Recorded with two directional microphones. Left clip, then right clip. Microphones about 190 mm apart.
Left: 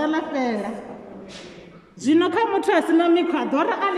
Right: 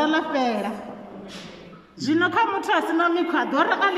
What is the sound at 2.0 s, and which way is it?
A man's voice, 15° left (ahead or behind).